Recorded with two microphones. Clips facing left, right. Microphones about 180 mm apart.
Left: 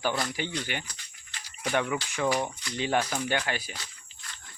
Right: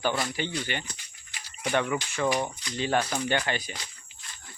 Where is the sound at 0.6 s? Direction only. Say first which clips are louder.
Right 2 dB; 10° left (ahead or behind).